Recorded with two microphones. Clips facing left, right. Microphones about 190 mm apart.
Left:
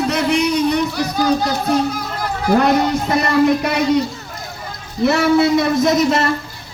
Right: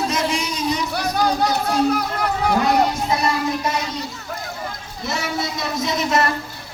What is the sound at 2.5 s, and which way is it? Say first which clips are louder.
Speech: left 5 dB; 65° left (ahead or behind).